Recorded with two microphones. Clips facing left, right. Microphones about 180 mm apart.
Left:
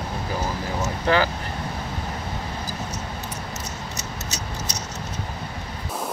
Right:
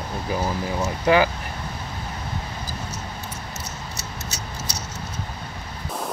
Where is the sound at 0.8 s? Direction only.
15° right (ahead or behind).